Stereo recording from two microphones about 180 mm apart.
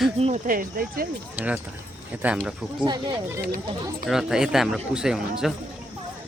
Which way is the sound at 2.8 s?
25° right (ahead or behind).